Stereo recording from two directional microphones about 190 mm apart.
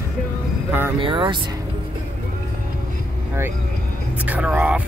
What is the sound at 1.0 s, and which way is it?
Speech, 25° right (ahead or behind).